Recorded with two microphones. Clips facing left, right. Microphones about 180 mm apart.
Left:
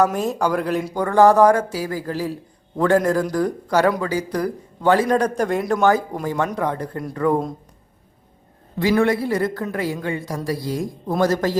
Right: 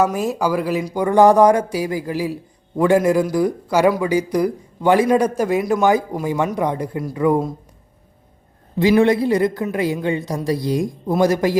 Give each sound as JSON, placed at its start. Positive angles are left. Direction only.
{"t": 0.0, "sound": "speech", "side_deg": -5}
{"t": 0.9, "sound": "a man's voice", "side_deg": -15}
{"t": 8.8, "sound": "a man's voice", "side_deg": -20}